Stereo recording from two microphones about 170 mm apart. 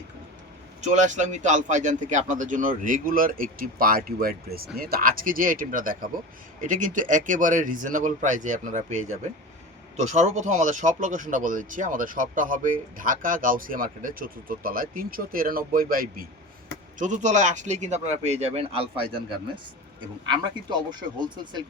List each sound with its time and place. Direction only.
0.8 s speech: 45° right (ahead or behind)
17.0 s speech: 45° right (ahead or behind)
20.2 s speech: 25° right (ahead or behind)